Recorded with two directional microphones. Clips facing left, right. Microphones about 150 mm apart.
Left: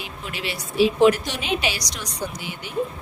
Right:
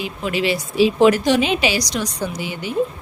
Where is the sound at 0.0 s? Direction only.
90° right.